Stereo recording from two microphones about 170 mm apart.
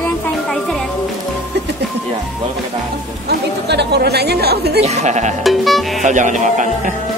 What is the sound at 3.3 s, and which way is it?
Speech, 80° right.